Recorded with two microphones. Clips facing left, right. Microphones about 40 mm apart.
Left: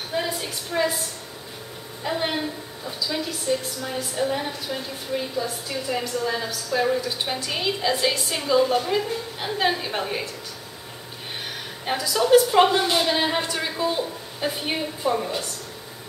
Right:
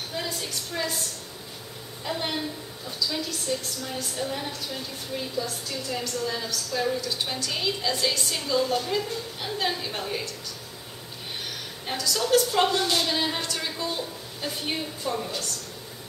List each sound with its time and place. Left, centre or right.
0.1 s a woman's voice: centre
11.8 s a woman's voice: centre